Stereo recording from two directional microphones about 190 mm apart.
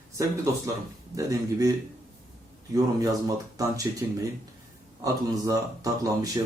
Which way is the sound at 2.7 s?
20° right (ahead or behind).